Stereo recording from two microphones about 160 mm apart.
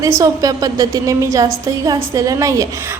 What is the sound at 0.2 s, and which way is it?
A woman's voice, 20° right (ahead or behind).